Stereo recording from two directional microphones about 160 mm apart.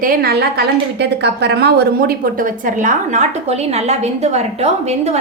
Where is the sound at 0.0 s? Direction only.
65° right (ahead or behind).